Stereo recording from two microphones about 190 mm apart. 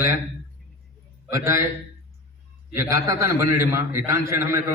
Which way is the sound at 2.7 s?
15° right (ahead or behind).